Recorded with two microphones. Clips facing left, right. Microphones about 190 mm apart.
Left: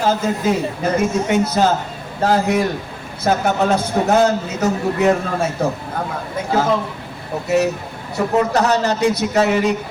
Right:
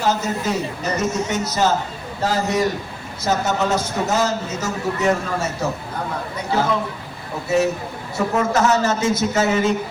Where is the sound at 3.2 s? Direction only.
55° left (ahead or behind).